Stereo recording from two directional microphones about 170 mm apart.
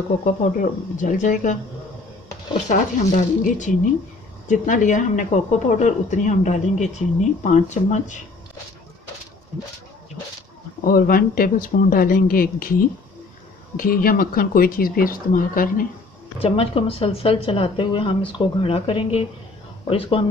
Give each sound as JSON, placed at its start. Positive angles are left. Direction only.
{"t": 0.2, "sound": "a woman's voice", "side_deg": 45}
{"t": 2.7, "sound": "a woman's voice", "side_deg": 45}
{"t": 10.8, "sound": "speech", "side_deg": 55}
{"t": 13.7, "sound": "speech", "side_deg": 55}
{"t": 16.3, "sound": "speech", "side_deg": 35}